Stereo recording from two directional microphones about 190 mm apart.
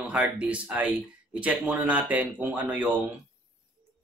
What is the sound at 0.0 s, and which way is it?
Speech, 5° right (ahead or behind).